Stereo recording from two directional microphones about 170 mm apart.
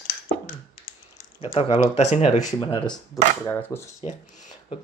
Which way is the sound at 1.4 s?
35° left (ahead or behind).